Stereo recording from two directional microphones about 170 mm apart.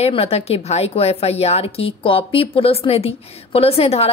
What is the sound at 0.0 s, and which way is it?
Speech, 35° left (ahead or behind).